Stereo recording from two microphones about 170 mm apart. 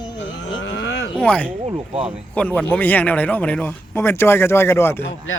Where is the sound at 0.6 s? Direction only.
90° left.